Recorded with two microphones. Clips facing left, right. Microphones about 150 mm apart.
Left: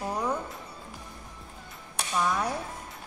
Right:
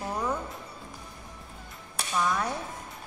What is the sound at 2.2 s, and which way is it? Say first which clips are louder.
Speech: even; 10° left (ahead or behind).